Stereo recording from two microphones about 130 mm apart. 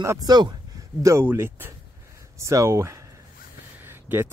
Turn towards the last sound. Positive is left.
turn(degrees=-15)  # may be behind; listen again after turning